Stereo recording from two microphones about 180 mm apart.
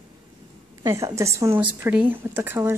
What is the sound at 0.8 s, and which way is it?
Speech, 15° right (ahead or behind).